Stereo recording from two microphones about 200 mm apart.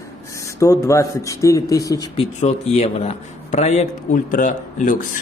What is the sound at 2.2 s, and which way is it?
A man's voice, 35° left (ahead or behind).